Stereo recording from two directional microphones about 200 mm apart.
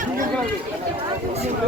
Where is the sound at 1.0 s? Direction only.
30° right (ahead or behind).